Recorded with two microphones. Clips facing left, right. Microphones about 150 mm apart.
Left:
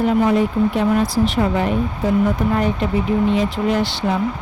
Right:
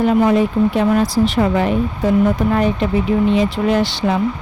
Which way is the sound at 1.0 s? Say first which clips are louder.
Right 2 dB; 90° right.